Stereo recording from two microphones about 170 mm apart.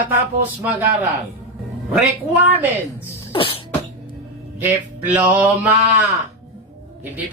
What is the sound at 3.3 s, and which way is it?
Cough, 30° left (ahead or behind).